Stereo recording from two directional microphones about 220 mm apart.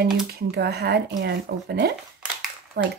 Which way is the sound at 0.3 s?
45° right (ahead or behind).